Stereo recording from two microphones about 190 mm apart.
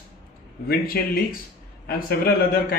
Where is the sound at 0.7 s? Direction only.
55° left (ahead or behind).